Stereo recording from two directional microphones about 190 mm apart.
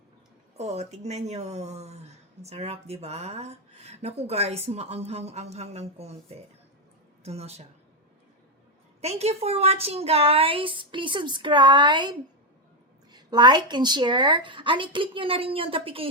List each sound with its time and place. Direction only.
0.5 s a woman's voice: 35° right (ahead or behind)
9.0 s a woman's voice: 35° right (ahead or behind)